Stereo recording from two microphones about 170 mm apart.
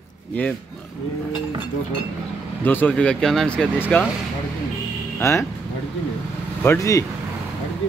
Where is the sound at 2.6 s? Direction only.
10° left (ahead or behind).